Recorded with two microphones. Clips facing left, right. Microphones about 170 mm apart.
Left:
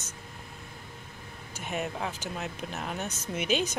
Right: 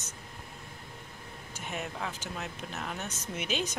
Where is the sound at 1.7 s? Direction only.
20° left (ahead or behind).